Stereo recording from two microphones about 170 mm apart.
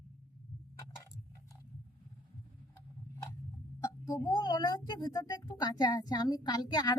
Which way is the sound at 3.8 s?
20° left (ahead or behind).